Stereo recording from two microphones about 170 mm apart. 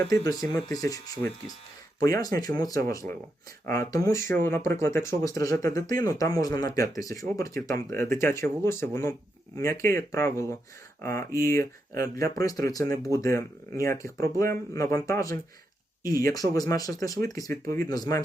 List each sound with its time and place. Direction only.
0.1 s speech: 20° left (ahead or behind)